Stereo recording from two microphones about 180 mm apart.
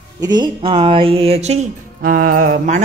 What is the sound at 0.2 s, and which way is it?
Speech, 25° right (ahead or behind).